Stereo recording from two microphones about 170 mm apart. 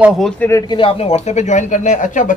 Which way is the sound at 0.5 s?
20° left (ahead or behind).